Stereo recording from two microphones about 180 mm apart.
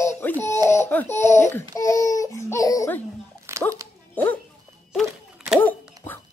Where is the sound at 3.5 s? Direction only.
15° right (ahead or behind).